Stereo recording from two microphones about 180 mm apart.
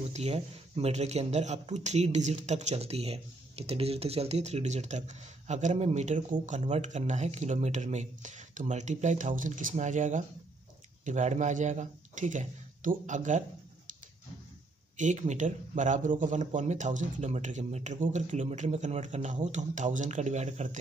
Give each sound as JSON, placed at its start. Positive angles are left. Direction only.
{"t": 0.1, "sound": "speech", "side_deg": -35}
{"t": 15.0, "sound": "speech", "side_deg": -40}